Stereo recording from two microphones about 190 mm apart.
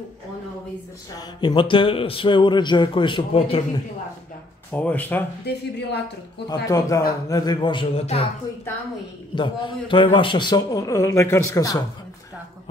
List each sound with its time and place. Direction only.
1.1 s speech: 25° left (ahead or behind)
4.7 s speech: 10° left (ahead or behind)
5.4 s a woman's voice: 60° left (ahead or behind)
6.7 s speech: 15° left (ahead or behind)
9.3 s speech: 25° left (ahead or behind)